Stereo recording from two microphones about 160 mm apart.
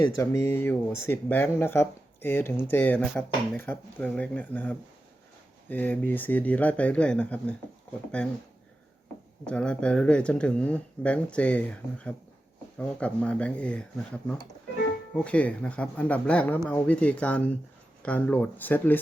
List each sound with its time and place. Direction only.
0.0 s speech: 20° left (ahead or behind)
9.5 s speech: 5° left (ahead or behind)
15.1 s speech: 10° left (ahead or behind)